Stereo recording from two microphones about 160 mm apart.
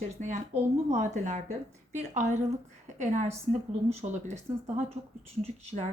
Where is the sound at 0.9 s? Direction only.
45° right (ahead or behind).